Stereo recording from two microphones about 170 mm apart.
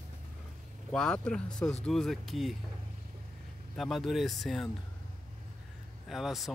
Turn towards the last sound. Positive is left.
turn(degrees=0)  # may be behind; listen again after turning